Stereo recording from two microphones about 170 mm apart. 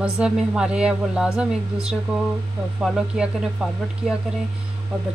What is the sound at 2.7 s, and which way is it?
A woman's voice, 5° right (ahead or behind).